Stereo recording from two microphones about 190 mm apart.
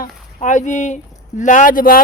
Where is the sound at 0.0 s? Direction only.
40° left (ahead or behind).